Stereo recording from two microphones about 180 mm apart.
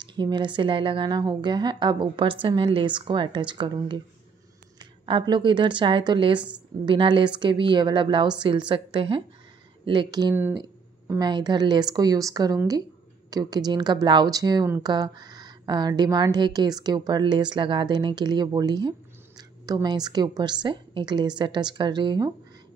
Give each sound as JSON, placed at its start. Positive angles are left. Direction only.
{"t": 0.0, "sound": "speech", "side_deg": -25}